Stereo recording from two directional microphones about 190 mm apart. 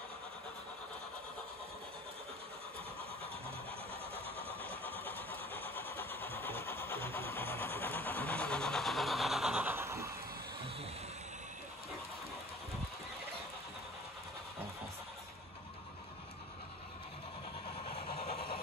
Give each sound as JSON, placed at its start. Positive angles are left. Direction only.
{"t": 4.8, "sound": "vehicle", "side_deg": 10}
{"t": 18.2, "sound": "vehicle", "side_deg": 55}